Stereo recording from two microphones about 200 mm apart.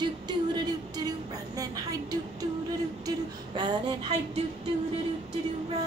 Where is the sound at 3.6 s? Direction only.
25° right (ahead or behind).